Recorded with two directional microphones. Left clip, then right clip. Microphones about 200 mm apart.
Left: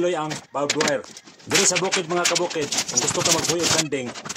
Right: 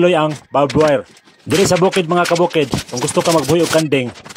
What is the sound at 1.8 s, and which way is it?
Speech, 30° right (ahead or behind).